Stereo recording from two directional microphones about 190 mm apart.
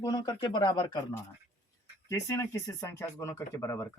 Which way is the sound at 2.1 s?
15° left (ahead or behind).